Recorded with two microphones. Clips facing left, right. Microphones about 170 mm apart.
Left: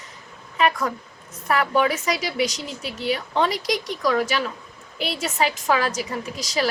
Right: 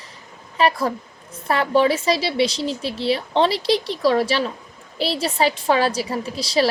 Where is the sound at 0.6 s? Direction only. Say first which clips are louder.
Right 3 dB; 30° right (ahead or behind).